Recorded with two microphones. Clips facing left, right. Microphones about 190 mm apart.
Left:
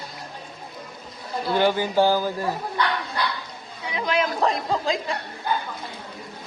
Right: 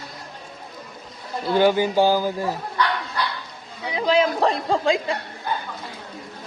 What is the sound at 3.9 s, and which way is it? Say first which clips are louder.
Speech: right 5 dB; 30° right (ahead or behind).